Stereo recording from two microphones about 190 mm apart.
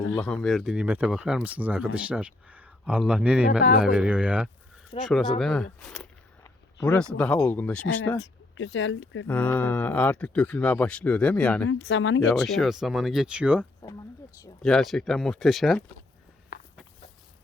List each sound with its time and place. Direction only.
0.2 s speech: 5° left (ahead or behind)
8.2 s speech: 85° left
9.2 s speech: 10° left (ahead or behind)
11.9 s speech: 75° left (ahead or behind)
12.3 s speech: centre (ahead or behind)
16.5 s walk: 50° left (ahead or behind)